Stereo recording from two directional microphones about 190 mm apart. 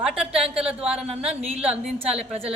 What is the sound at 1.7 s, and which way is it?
Speech, 5° right (ahead or behind).